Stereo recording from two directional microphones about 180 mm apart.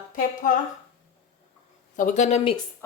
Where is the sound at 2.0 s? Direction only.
45° left (ahead or behind).